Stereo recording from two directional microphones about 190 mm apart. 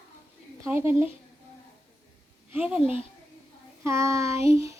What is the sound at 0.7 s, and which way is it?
Speech, 10° right (ahead or behind).